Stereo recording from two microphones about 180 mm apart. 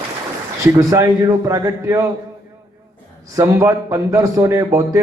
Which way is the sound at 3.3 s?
15° right (ahead or behind).